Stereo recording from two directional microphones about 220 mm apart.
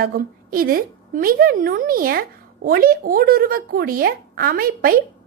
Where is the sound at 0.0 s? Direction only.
40° right (ahead or behind).